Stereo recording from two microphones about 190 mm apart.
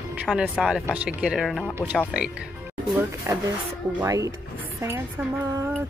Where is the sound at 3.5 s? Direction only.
15° right (ahead or behind).